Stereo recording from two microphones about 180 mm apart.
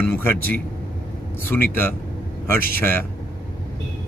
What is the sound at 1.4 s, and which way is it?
Speech, 10° left (ahead or behind).